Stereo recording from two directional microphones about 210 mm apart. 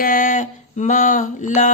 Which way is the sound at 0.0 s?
40° left (ahead or behind).